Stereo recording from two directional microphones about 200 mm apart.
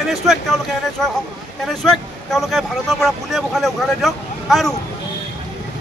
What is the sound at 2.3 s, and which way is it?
A man's voice, centre (ahead or behind).